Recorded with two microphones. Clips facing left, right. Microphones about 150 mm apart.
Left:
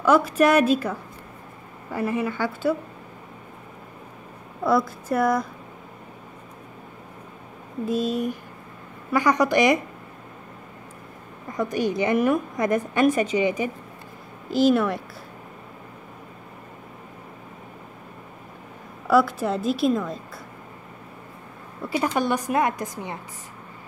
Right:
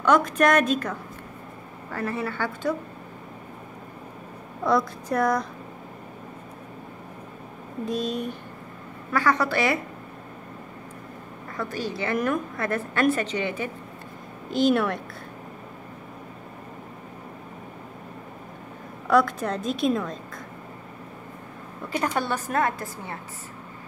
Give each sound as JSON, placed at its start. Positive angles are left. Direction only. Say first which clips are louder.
{"t": 0.0, "sound": "a woman's voice", "louder": "left 2 dB", "side_deg": 5}
{"t": 5.1, "sound": "a woman's voice", "louder": "left 2 dB", "side_deg": 5}
{"t": 7.8, "sound": "a woman's voice", "louder": "left 4 dB", "side_deg": 5}
{"t": 11.4, "sound": "a woman's voice", "louder": "left 6 dB", "side_deg": 15}
{"t": 19.0, "sound": "a woman's voice", "louder": "left 2 dB", "side_deg": 5}
{"t": 21.8, "sound": "a woman's voice", "louder": "left 3 dB", "side_deg": 10}